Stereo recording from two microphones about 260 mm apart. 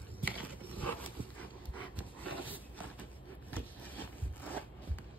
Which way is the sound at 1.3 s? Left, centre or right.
Centre.